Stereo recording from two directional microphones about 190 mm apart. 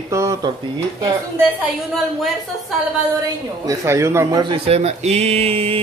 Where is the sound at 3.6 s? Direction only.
15° right (ahead or behind); by 5.7 s 30° right (ahead or behind).